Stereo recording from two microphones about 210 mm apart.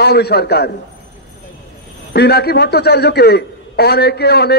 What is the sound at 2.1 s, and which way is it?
A man's voice, 50° left (ahead or behind).